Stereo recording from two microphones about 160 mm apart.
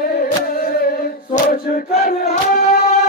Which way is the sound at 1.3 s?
60° left (ahead or behind).